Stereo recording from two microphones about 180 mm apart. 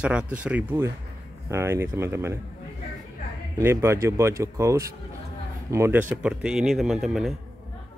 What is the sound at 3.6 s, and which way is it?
Speech, 15° right (ahead or behind).